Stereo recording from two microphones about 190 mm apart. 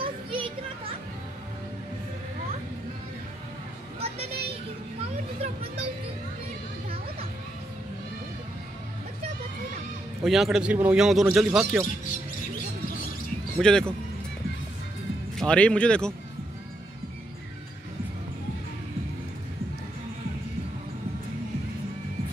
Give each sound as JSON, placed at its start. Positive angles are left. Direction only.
{"t": 0.0, "sound": "music", "side_deg": -25}
{"t": 5.4, "sound": "a sound", "side_deg": -30}
{"t": 10.2, "sound": "speech", "side_deg": 0}
{"t": 13.6, "sound": "speech", "side_deg": 5}
{"t": 15.3, "sound": "speech", "side_deg": 5}